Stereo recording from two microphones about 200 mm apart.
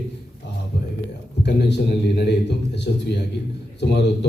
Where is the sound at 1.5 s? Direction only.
55° left (ahead or behind).